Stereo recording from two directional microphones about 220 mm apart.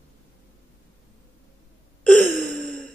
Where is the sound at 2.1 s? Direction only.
35° right (ahead or behind).